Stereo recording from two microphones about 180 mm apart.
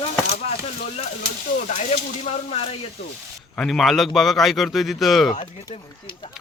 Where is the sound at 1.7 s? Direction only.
35° left (ahead or behind).